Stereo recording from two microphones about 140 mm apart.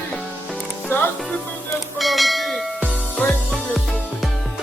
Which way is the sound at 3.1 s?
10° left (ahead or behind).